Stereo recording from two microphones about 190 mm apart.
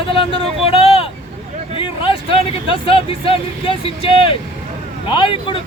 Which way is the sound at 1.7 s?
25° left (ahead or behind).